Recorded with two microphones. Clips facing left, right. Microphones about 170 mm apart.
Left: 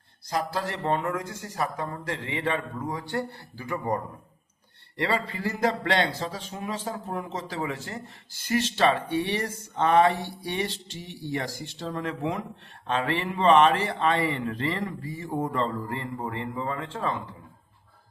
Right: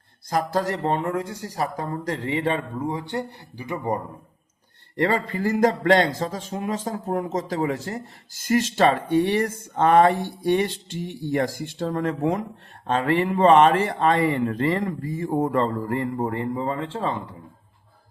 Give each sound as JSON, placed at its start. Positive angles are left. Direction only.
{"t": 0.3, "sound": "speech", "side_deg": -45}
{"t": 2.8, "sound": "speech", "side_deg": -20}
{"t": 4.9, "sound": "speech", "side_deg": -45}